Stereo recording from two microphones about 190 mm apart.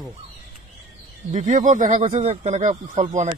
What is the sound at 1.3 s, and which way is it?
Speech, 40° right (ahead or behind).